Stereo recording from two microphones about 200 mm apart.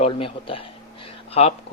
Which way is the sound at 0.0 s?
25° left (ahead or behind).